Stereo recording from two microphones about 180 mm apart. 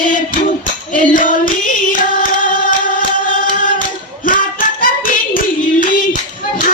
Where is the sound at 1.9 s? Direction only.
50° left (ahead or behind).